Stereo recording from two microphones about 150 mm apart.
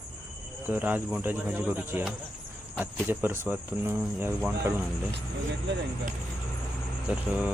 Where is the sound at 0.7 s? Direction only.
10° right (ahead or behind).